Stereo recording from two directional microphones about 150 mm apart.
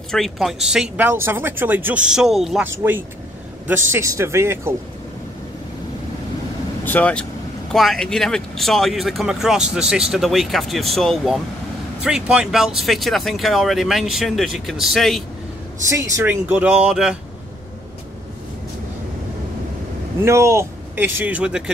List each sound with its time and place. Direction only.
0.1 s speech: centre (ahead or behind)
2.6 s speech: 15° right (ahead or behind)
6.8 s speech: 10° left (ahead or behind)
15.9 s speech: 15° right (ahead or behind)
20.2 s speech: 20° right (ahead or behind)